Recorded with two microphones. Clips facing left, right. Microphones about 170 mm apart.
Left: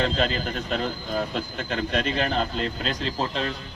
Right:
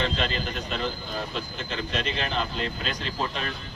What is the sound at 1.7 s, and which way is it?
A man's voice, 50° left (ahead or behind).